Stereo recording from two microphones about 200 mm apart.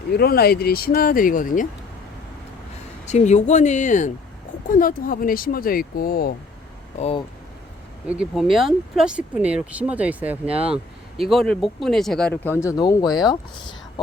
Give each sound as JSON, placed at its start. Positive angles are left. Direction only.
{"t": 0.1, "sound": "speech", "side_deg": 50}
{"t": 3.1, "sound": "speech", "side_deg": 35}
{"t": 7.0, "sound": "speech", "side_deg": 30}
{"t": 8.0, "sound": "speech", "side_deg": -5}